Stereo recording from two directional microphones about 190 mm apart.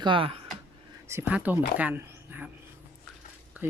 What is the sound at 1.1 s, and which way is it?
Speech, 10° right (ahead or behind).